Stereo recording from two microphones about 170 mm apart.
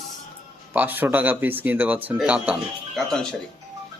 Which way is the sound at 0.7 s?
10° right (ahead or behind).